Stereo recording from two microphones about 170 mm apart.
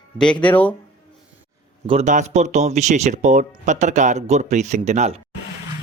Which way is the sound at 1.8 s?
40° right (ahead or behind).